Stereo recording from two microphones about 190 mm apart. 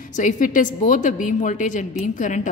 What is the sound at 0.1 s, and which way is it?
A woman's voice, 45° left (ahead or behind).